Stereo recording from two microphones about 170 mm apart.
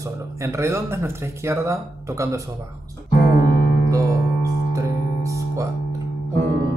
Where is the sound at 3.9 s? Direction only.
20° right (ahead or behind).